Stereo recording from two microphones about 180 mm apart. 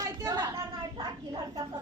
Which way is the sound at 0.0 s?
20° right (ahead or behind).